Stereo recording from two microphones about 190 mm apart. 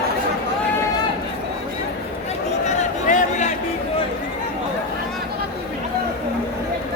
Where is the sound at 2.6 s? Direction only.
40° left (ahead or behind).